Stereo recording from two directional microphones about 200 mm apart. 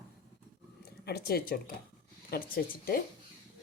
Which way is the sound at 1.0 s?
50° left (ahead or behind).